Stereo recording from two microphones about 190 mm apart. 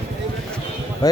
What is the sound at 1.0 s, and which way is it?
Speech, 20° left (ahead or behind).